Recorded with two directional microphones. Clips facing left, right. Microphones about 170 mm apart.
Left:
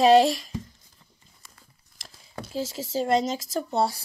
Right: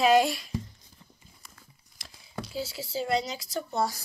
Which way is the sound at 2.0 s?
45° left (ahead or behind).